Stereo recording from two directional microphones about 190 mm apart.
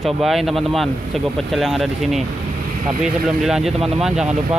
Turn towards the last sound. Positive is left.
turn(degrees=0)  # may be behind; listen again after turning